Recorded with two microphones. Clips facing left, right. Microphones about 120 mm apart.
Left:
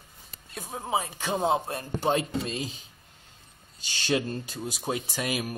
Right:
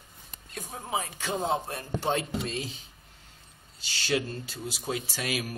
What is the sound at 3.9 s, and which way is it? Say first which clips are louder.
Speech: left 2 dB; 20° left (ahead or behind).